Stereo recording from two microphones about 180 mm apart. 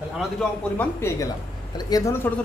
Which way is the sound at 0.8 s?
15° left (ahead or behind).